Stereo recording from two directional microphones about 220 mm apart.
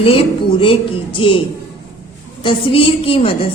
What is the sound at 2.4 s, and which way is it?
A woman's voice, 25° left (ahead or behind).